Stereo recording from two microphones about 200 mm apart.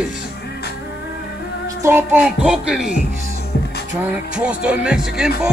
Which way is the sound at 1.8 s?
10° right (ahead or behind).